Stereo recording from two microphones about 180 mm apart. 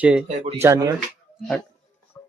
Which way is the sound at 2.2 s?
15° left (ahead or behind).